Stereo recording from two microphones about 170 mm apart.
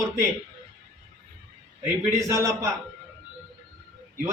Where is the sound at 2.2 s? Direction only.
20° right (ahead or behind).